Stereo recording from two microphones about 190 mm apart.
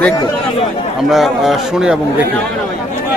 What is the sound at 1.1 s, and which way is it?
Speech, centre (ahead or behind).